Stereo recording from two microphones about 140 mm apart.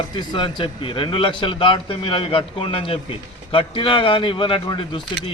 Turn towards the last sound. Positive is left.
turn(degrees=35)  # may be behind; listen again after turning